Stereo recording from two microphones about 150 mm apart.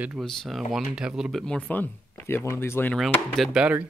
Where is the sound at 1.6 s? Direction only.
10° left (ahead or behind).